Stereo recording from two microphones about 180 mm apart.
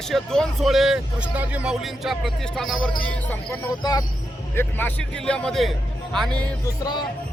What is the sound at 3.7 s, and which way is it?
Speech, 20° left (ahead or behind).